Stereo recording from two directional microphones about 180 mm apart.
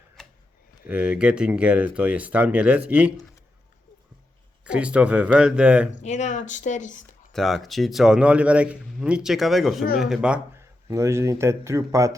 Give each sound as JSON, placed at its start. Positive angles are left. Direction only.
{"t": 0.9, "sound": "speech", "side_deg": -5}
{"t": 4.6, "sound": "speech", "side_deg": -5}
{"t": 5.9, "sound": "speech", "side_deg": 40}
{"t": 7.3, "sound": "speech", "side_deg": 0}
{"t": 10.8, "sound": "speech", "side_deg": -15}